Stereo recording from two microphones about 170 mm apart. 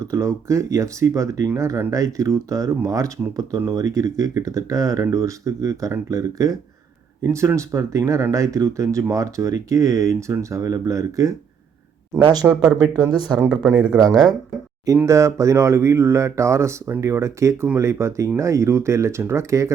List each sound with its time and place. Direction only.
0.0 s speech: 15° right (ahead or behind)
13.5 s speech: 5° right (ahead or behind)
14.8 s speech: 15° right (ahead or behind)